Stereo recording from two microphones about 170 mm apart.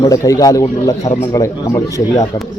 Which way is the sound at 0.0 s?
20° left (ahead or behind).